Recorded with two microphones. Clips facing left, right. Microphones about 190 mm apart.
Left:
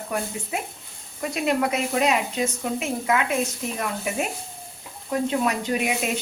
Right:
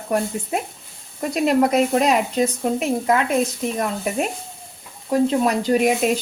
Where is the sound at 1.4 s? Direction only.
40° right (ahead or behind).